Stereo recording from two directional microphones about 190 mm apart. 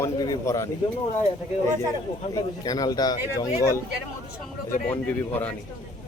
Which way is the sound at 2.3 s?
20° left (ahead or behind).